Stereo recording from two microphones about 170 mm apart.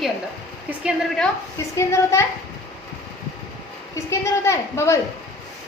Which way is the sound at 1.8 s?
15° left (ahead or behind).